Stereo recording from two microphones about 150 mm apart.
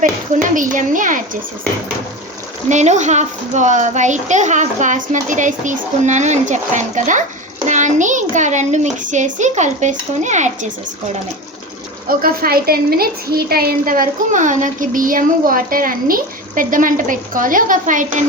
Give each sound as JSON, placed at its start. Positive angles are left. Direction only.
{"t": 0.0, "sound": "a child's voice", "side_deg": -60}
{"t": 2.6, "sound": "a child's voice", "side_deg": -50}
{"t": 12.0, "sound": "a woman's voice", "side_deg": -75}